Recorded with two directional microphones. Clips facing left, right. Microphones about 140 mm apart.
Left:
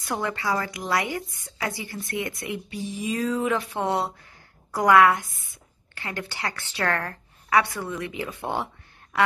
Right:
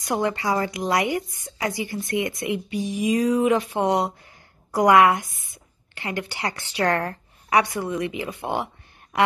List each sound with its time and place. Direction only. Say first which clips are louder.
0.0 s a woman's voice: right 4 dB; 20° right (ahead or behind)